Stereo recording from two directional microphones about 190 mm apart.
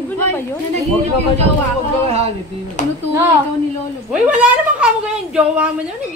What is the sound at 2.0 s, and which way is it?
Speech, 30° right (ahead or behind).